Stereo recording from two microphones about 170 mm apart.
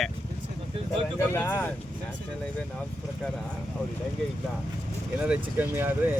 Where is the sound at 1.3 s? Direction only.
15° left (ahead or behind).